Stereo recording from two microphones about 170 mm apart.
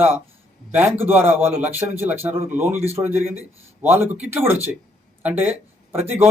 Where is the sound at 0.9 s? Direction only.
10° right (ahead or behind).